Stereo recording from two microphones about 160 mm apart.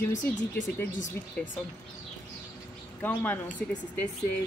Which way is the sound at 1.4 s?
10° left (ahead or behind).